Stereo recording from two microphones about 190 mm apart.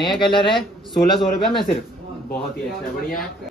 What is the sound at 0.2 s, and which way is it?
Speech, 25° left (ahead or behind).